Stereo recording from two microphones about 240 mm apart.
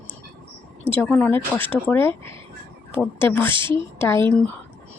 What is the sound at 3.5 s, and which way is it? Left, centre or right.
Speech, right.